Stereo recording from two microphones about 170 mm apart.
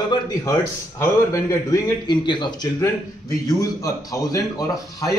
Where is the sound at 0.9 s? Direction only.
20° left (ahead or behind).